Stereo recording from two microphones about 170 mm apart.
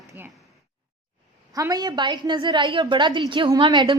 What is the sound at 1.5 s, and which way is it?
A woman's voice, 20° right (ahead or behind).